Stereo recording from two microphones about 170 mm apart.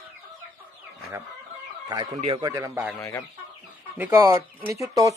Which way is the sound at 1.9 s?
25° right (ahead or behind).